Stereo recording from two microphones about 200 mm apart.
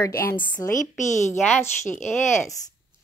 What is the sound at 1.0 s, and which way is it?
Speech, 35° left (ahead or behind).